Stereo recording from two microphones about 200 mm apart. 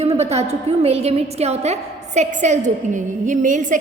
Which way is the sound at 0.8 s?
30° right (ahead or behind).